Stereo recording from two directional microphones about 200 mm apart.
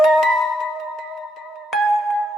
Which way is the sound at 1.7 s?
Centre (ahead or behind).